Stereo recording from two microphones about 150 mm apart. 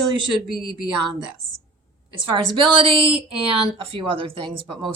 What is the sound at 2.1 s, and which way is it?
Speech, 35° right (ahead or behind).